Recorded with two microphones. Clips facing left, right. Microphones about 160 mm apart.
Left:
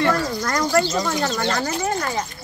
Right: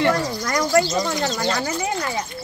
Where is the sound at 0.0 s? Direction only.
20° right (ahead or behind).